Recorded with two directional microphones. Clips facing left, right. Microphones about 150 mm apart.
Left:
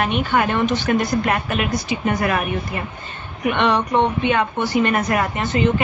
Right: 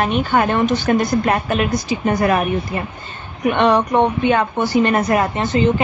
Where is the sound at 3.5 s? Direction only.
40° right (ahead or behind).